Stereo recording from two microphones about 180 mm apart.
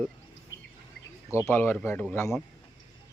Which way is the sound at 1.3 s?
15° left (ahead or behind).